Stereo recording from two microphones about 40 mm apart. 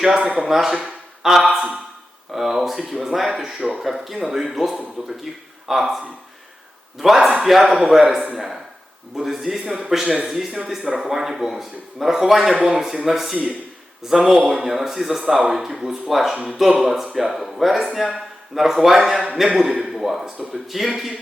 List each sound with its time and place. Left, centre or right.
0.4 s a man's voice: centre
3.6 s speech: centre
3.8 s a man's voice: centre
7.0 s a man's voice: centre
9.1 s a man's voice: centre